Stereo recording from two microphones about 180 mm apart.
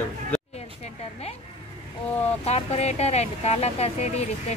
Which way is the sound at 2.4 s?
35° left (ahead or behind).